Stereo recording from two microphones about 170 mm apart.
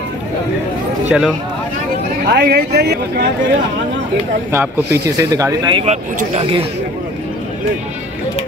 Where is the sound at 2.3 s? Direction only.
65° right (ahead or behind).